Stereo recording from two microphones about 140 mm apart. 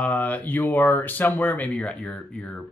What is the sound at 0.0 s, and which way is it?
Speech, 10° left (ahead or behind).